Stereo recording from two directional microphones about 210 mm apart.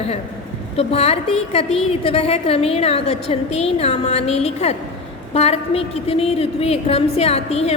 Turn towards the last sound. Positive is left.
turn(degrees=30)  # may be behind; listen again after turning